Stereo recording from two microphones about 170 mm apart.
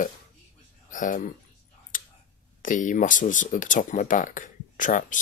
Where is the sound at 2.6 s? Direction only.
50° left (ahead or behind).